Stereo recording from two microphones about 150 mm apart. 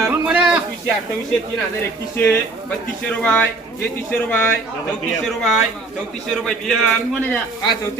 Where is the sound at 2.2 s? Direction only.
10° left (ahead or behind).